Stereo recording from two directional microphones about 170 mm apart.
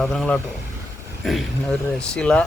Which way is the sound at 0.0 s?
Centre (ahead or behind).